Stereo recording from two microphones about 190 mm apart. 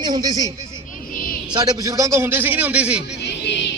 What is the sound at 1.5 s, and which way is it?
A man's voice, 20° right (ahead or behind).